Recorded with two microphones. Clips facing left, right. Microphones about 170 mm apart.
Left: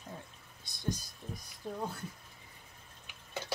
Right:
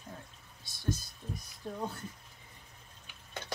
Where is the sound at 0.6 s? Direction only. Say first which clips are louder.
Right 2 dB; 15° left (ahead or behind).